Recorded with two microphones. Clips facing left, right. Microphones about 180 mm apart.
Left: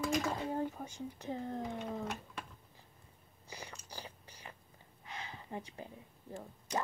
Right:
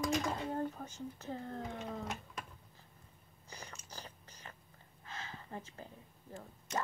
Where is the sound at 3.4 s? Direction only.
10° left (ahead or behind).